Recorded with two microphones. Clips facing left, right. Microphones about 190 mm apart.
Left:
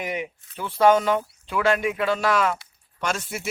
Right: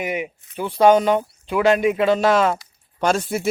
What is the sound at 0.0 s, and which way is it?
Speech, 10° right (ahead or behind).